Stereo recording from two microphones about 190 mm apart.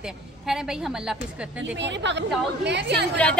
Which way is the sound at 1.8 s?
70° right (ahead or behind).